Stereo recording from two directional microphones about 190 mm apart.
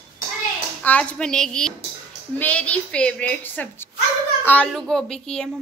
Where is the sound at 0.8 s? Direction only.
5° left (ahead or behind).